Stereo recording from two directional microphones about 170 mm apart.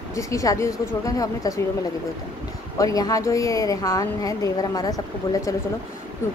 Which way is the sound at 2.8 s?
20° left (ahead or behind).